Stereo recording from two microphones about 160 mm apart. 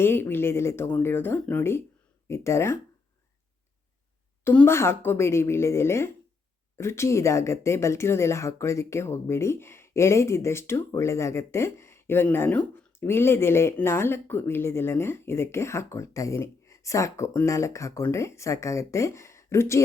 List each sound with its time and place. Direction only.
0.0 s speech: 15° left (ahead or behind)
4.4 s speech: 15° left (ahead or behind)